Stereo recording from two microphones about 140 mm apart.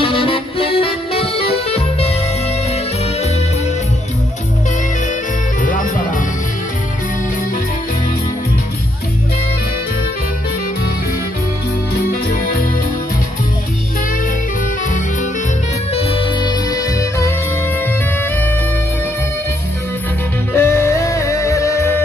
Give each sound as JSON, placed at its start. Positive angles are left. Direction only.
{"t": 0.0, "sound": "accordion", "side_deg": 40}
{"t": 5.6, "sound": "music", "side_deg": 70}
{"t": 12.3, "sound": "keyboard", "side_deg": 90}
{"t": 15.9, "sound": "music", "side_deg": 45}
{"t": 16.4, "sound": "music", "side_deg": 25}
{"t": 20.5, "sound": "music", "side_deg": 20}